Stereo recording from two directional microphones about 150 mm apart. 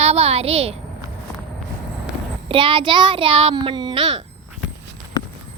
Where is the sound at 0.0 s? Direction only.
45° right (ahead or behind).